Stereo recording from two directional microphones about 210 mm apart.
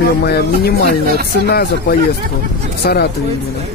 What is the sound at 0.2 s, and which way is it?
Speech, 50° left (ahead or behind).